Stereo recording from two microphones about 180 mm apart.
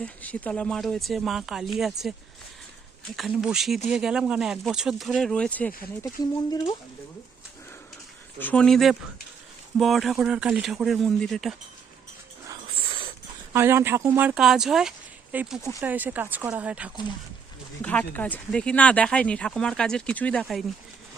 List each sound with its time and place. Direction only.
0.0 s speech: 10° left (ahead or behind)
3.2 s speech: centre (ahead or behind)
6.3 s speech: 20° left (ahead or behind)
8.4 s speech: 10° left (ahead or behind)
12.5 s dog: 30° right (ahead or behind)
13.5 s speech: 15° right (ahead or behind)
17.8 s speech: 10° left (ahead or behind)